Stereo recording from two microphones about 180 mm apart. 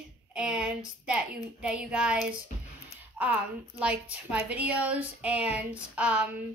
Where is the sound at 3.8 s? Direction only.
5° right (ahead or behind).